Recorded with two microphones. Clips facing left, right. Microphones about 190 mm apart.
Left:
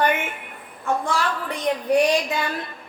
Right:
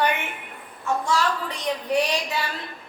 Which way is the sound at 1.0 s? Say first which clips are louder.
Right 1 dB; 55° left (ahead or behind).